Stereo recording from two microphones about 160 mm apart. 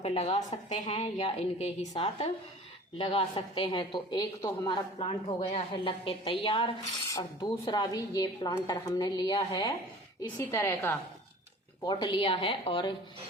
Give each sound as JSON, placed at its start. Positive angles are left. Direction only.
{"t": 0.0, "sound": "a woman's voice", "side_deg": 40}
{"t": 10.3, "sound": "a woman's voice", "side_deg": 15}
{"t": 11.9, "sound": "a woman's voice", "side_deg": 30}